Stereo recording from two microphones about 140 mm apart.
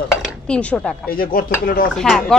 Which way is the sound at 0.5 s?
10° left (ahead or behind).